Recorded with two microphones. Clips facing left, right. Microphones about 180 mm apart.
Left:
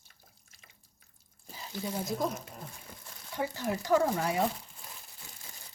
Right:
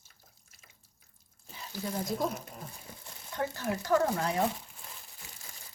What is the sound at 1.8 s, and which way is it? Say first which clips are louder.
Speech: even; 5° left (ahead or behind).